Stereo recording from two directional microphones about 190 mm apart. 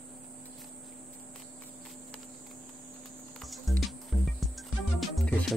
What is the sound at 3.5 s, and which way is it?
Music, centre (ahead or behind).